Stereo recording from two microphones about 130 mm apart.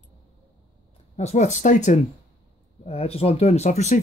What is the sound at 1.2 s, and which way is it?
Speech, 60° left (ahead or behind).